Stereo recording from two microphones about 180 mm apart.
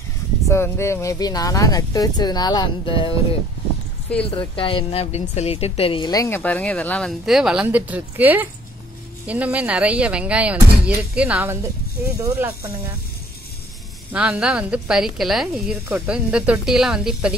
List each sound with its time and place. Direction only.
0.5 s speech: 15° left (ahead or behind)
4.3 s speech: 30° left (ahead or behind)
6.1 s a woman's voice: 15° left (ahead or behind); by 12.7 s 15° right (ahead or behind)
14.1 s a woman's voice: 5° right (ahead or behind)